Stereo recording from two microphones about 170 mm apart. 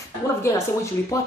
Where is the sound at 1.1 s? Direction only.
20° left (ahead or behind).